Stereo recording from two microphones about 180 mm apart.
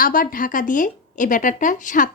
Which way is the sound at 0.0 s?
50° left (ahead or behind).